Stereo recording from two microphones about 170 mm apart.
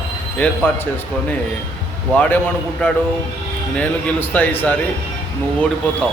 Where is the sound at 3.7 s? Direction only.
10° left (ahead or behind).